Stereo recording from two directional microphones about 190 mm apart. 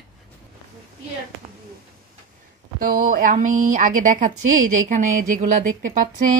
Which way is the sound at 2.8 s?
50° right (ahead or behind).